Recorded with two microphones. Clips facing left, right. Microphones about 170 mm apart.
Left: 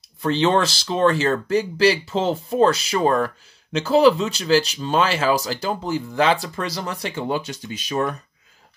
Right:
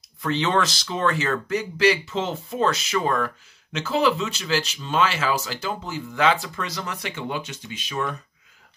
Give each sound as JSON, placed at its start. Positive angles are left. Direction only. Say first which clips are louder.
{"t": 0.2, "sound": "speech", "louder": "left 4 dB", "side_deg": 30}